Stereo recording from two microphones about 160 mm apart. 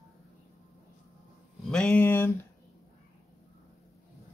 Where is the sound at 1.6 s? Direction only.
5° left (ahead or behind).